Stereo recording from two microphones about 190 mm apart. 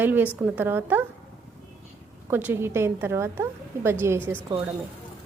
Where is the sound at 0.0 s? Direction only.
10° right (ahead or behind).